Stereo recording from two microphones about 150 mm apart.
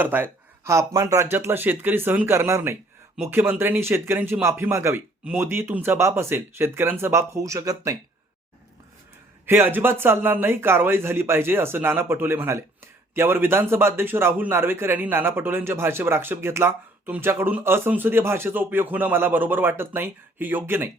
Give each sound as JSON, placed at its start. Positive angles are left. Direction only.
{"t": 0.0, "sound": "speech", "side_deg": -15}
{"t": 9.5, "sound": "speech", "side_deg": -15}